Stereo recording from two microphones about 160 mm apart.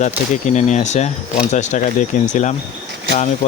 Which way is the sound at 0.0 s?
50° left (ahead or behind).